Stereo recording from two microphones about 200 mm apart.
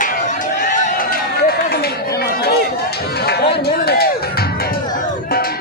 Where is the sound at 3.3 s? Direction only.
55° left (ahead or behind).